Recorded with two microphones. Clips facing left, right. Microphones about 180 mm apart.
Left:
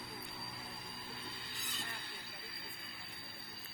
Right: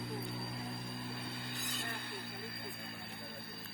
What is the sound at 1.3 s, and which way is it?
Music, 55° right (ahead or behind).